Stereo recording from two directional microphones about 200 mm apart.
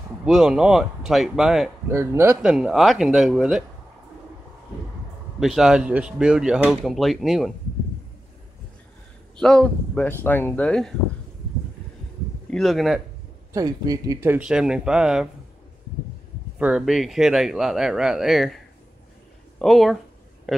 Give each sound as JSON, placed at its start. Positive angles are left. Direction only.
{"t": 0.2, "sound": "speech", "side_deg": -5}
{"t": 1.9, "sound": "speech", "side_deg": -15}
{"t": 5.4, "sound": "speech", "side_deg": 0}
{"t": 9.4, "sound": "speech", "side_deg": 5}
{"t": 12.4, "sound": "speech", "side_deg": 0}
{"t": 13.5, "sound": "speech", "side_deg": -20}
{"t": 16.5, "sound": "speech", "side_deg": -5}
{"t": 19.6, "sound": "a man's voice", "side_deg": 0}